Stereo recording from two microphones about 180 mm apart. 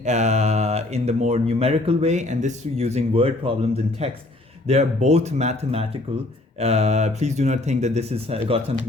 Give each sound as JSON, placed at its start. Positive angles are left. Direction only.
{"t": 0.0, "sound": "speech", "side_deg": -40}